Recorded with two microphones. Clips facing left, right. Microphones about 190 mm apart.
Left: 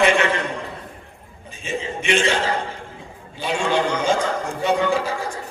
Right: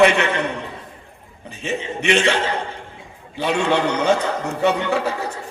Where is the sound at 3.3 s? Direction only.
65° right (ahead or behind).